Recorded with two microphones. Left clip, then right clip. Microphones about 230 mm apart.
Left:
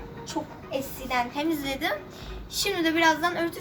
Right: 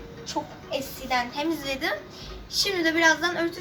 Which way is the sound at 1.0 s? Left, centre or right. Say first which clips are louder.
Right 1 dB; centre.